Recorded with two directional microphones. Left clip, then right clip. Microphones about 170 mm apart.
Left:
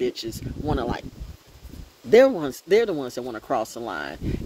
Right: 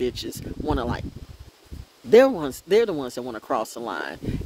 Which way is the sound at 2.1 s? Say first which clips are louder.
Even; 30° right (ahead or behind).